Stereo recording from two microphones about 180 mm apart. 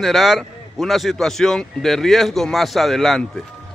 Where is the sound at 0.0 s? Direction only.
Centre (ahead or behind).